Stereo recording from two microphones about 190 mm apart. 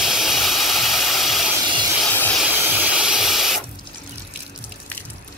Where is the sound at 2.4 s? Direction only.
10° right (ahead or behind).